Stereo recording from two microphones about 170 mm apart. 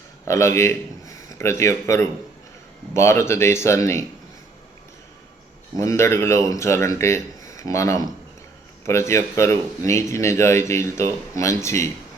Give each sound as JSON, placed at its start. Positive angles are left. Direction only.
{"t": 0.3, "sound": "a man's voice", "side_deg": 15}
{"t": 5.8, "sound": "speech", "side_deg": 15}